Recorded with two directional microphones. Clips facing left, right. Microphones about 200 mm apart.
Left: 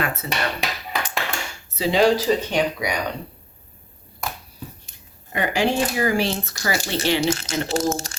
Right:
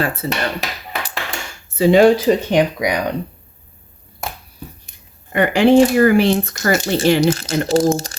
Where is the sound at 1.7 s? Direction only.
55° right (ahead or behind).